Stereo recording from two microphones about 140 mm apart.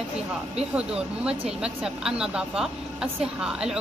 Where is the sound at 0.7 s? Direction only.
5° right (ahead or behind).